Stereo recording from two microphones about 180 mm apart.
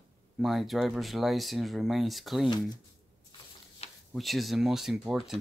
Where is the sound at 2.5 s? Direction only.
20° left (ahead or behind).